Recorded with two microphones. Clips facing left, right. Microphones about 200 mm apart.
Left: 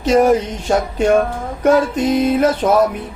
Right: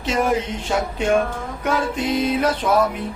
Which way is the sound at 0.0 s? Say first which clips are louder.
Left 8 dB; 40° left (ahead or behind).